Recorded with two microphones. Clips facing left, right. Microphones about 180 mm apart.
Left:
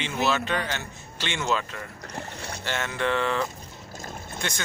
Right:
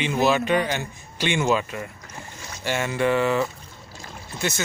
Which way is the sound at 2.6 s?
10° right (ahead or behind).